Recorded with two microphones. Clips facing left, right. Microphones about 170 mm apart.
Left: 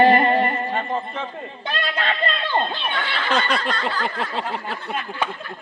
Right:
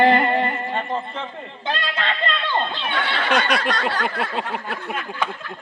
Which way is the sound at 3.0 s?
75° right (ahead or behind).